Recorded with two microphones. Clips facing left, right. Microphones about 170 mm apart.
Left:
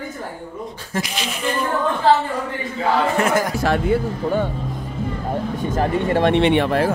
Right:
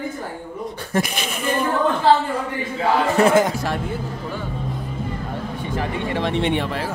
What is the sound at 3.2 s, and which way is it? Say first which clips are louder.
Speech: right 4 dB; 25° right (ahead or behind).